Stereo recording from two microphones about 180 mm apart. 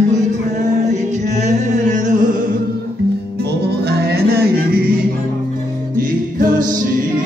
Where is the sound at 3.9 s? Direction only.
65° right (ahead or behind).